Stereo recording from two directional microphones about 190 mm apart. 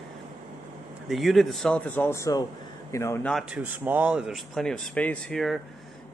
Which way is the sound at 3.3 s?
5° right (ahead or behind).